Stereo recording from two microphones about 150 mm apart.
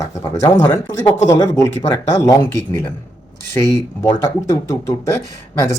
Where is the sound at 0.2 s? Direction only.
20° left (ahead or behind).